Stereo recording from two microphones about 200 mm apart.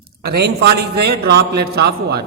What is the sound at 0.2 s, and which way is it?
A man's voice, 55° right (ahead or behind).